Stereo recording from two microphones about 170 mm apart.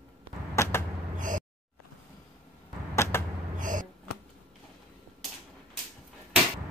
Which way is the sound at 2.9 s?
15° left (ahead or behind).